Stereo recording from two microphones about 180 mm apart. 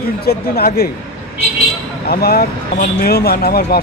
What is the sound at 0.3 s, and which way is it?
Speech, 60° left (ahead or behind).